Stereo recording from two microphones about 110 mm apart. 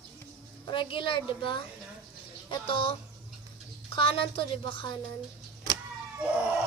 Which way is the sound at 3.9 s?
55° left (ahead or behind).